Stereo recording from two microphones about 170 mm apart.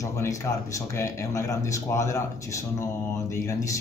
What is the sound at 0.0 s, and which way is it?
Speech, 20° left (ahead or behind).